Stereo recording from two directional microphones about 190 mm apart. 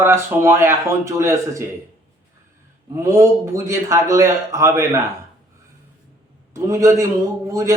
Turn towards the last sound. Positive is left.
turn(degrees=-15)  # may be behind; listen again after turning